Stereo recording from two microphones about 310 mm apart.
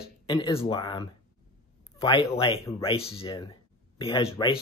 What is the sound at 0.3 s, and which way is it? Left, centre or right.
Speech, centre.